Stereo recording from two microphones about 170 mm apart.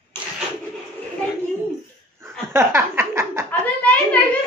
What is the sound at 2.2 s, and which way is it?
Laughter, 15° right (ahead or behind).